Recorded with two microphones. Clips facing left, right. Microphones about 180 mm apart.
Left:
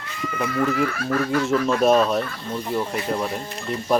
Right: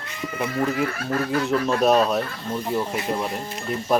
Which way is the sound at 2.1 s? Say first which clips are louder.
Even; 5° right (ahead or behind).